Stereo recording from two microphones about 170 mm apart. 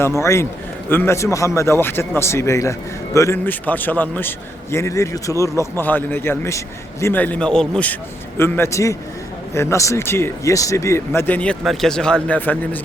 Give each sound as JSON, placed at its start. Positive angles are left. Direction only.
{"t": 0.2, "sound": "a man's voice", "side_deg": 15}